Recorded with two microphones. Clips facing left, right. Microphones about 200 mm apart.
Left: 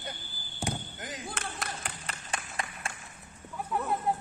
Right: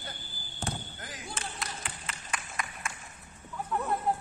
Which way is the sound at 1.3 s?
55° left (ahead or behind).